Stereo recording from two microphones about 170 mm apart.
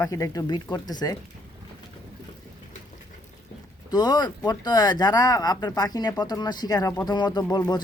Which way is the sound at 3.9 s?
25° left (ahead or behind).